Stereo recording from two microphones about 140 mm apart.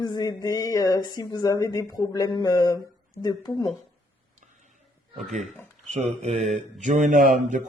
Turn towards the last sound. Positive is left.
turn(degrees=-65)  # may be behind; listen again after turning